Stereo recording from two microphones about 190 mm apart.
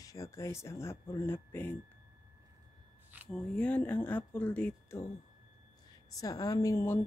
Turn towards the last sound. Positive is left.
turn(degrees=15)  # may be behind; listen again after turning